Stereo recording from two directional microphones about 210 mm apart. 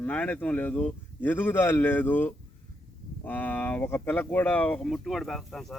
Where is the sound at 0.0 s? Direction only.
5° left (ahead or behind).